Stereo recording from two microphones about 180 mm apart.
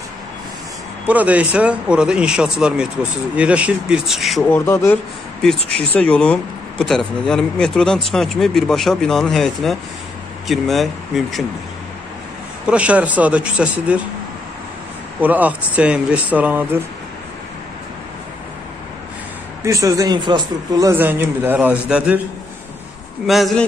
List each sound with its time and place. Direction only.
1.0 s speech: 10° right (ahead or behind)
4.5 s speech: 15° left (ahead or behind)
12.6 s speech: 5° right (ahead or behind)
15.1 s speech: 10° right (ahead or behind)
19.6 s speech: 15° right (ahead or behind)
20.9 s speech: 10° right (ahead or behind)
23.2 s speech: centre (ahead or behind)